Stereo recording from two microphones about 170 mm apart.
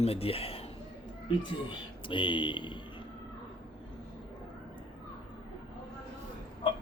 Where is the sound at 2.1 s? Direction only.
30° left (ahead or behind).